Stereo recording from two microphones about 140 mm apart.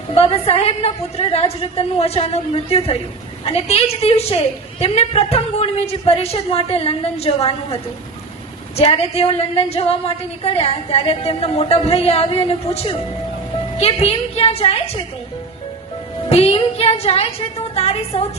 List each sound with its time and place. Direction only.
0.1 s a woman's voice: 45° left (ahead or behind)
16.3 s a woman's voice: 45° left (ahead or behind)